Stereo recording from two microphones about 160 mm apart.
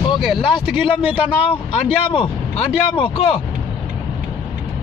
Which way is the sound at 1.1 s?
35° left (ahead or behind).